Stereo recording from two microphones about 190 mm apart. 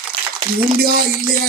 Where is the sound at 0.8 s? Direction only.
50° right (ahead or behind).